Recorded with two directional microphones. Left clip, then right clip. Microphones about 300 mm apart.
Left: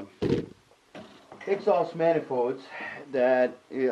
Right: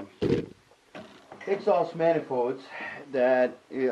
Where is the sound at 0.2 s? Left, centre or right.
Centre.